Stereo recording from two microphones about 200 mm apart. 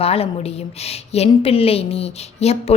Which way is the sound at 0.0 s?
30° left (ahead or behind).